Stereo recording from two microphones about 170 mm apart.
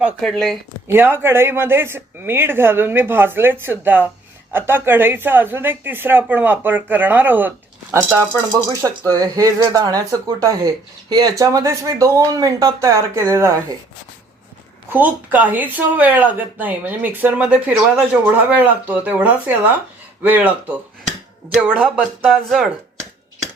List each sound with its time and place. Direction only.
0.2 s speech: 5° left (ahead or behind)
0.9 s speech: 10° right (ahead or behind)
14.9 s speech: 10° right (ahead or behind)